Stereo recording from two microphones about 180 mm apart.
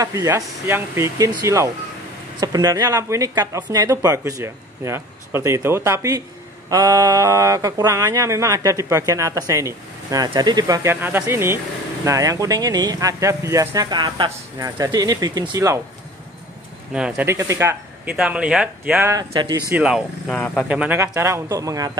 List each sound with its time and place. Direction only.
0.0 s speech: 20° right (ahead or behind)
16.9 s speech: 5° right (ahead or behind)
19.1 s speech: 25° right (ahead or behind)
19.7 s speech: 5° right (ahead or behind)
20.3 s speech: 10° left (ahead or behind)
20.6 s speech: 5° right (ahead or behind)